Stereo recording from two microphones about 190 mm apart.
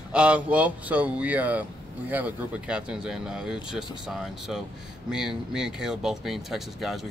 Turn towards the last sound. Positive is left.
turn(degrees=0)  # may be behind; listen again after turning